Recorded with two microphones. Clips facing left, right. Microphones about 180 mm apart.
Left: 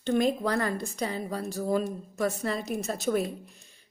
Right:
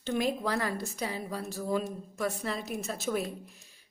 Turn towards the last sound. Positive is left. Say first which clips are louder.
# left 4 dB
turn(degrees=0)  # may be behind; listen again after turning